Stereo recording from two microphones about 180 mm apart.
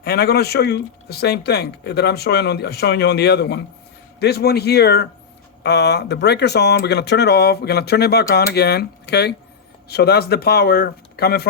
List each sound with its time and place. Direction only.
0.0 s speech: 60° left (ahead or behind)